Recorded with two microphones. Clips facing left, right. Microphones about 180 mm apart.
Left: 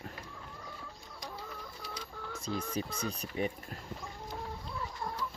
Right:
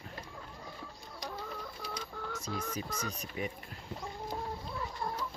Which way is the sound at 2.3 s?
30° left (ahead or behind).